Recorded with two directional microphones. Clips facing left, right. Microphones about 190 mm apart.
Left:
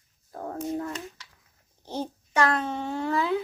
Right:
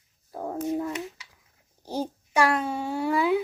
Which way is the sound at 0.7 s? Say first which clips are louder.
Right 3 dB; 10° right (ahead or behind).